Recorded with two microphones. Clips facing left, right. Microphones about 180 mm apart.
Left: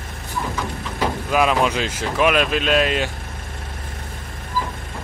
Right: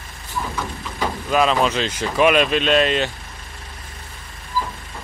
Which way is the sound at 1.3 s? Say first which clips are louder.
Right 1 dB; 10° left (ahead or behind).